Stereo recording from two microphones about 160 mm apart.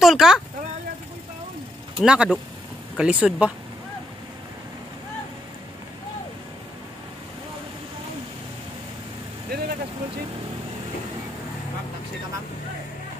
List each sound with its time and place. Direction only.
0.0 s speech: centre (ahead or behind)
2.0 s speech: 5° right (ahead or behind)
9.5 s vehicle: 75° right (ahead or behind)